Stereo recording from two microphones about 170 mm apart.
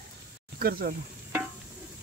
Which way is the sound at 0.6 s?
60° right (ahead or behind).